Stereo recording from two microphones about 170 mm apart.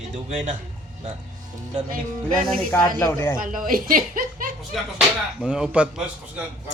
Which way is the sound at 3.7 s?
55° right (ahead or behind).